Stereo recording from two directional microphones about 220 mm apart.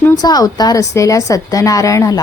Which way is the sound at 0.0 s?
15° left (ahead or behind).